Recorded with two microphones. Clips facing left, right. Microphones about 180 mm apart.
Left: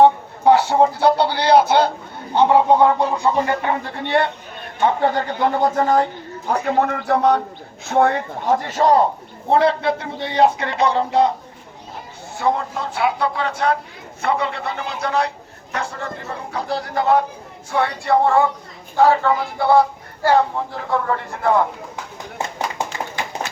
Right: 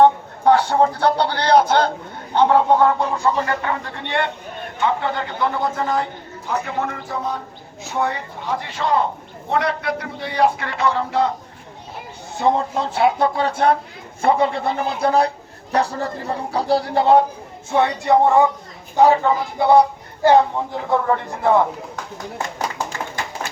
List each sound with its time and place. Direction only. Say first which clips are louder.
0.0 s a man's voice: left 1 dB; 10° left (ahead or behind); by 7.4 s 70° left (ahead or behind)
7.9 s a man's voice: left 6 dB; 55° left (ahead or behind)
9.5 s a man's voice: left 5 dB; 30° left (ahead or behind)
12.4 s speech: right 2 dB; 25° right (ahead or behind)
13.1 s a man's voice: right 3 dB; 40° right (ahead or behind); by 20.4 s 20° right (ahead or behind)